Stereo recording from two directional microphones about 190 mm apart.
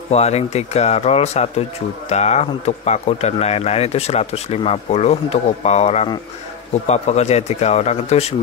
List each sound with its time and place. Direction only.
0.1 s speech: 35° left (ahead or behind)